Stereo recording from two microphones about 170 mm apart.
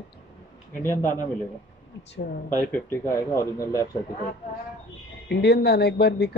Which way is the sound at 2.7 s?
15° left (ahead or behind).